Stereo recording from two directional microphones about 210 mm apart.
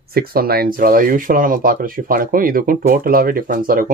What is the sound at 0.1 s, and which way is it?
Speech, 45° right (ahead or behind).